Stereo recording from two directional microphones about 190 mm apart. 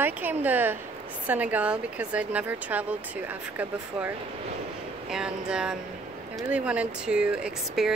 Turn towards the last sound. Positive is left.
turn(degrees=-5)  # may be behind; listen again after turning